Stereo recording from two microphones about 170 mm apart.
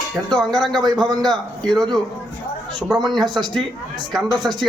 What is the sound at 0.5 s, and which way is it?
Speech, centre (ahead or behind).